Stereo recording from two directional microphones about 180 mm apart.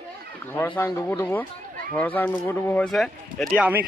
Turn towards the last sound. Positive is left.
turn(degrees=0)  # may be behind; listen again after turning